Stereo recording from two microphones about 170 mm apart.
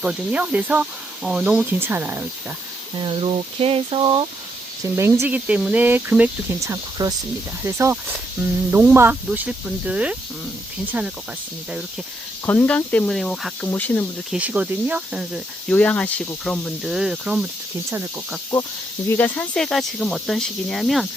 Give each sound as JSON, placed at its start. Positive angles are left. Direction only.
{"t": 0.0, "sound": "speech", "side_deg": -5}
{"t": 3.0, "sound": "speech", "side_deg": -35}
{"t": 4.8, "sound": "speech", "side_deg": -15}
{"t": 12.5, "sound": "speech", "side_deg": 10}
{"t": 14.3, "sound": "speech", "side_deg": -5}
{"t": 15.7, "sound": "speech", "side_deg": 10}
{"t": 18.5, "sound": "speech", "side_deg": 15}